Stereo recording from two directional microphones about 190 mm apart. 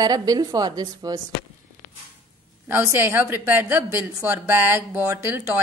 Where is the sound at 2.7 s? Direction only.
10° right (ahead or behind).